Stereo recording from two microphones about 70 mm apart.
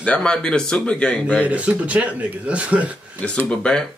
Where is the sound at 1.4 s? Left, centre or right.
Centre.